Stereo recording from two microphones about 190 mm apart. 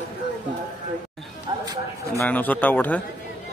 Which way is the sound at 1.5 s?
25° right (ahead or behind).